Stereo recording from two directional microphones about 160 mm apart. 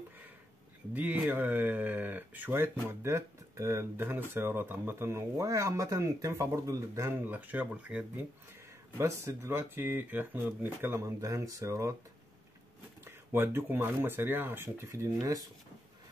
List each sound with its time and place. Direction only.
0.9 s speech: 10° right (ahead or behind)
13.0 s speech: 15° right (ahead or behind)